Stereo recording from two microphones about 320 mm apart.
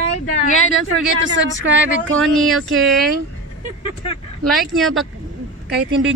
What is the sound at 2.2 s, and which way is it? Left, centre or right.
Speech, centre.